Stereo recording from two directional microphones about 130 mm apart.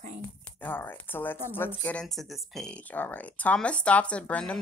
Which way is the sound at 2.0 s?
Centre (ahead or behind).